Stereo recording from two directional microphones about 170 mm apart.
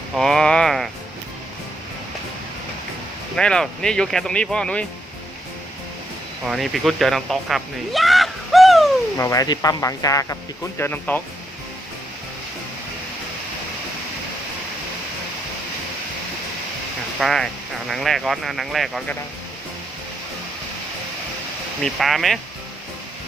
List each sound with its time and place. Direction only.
0.2 s speech: 5° left (ahead or behind)
3.3 s speech: 5° left (ahead or behind)
6.4 s speech: centre (ahead or behind)
9.1 s speech: 20° left (ahead or behind)
17.2 s speech: centre (ahead or behind)
21.8 s speech: centre (ahead or behind)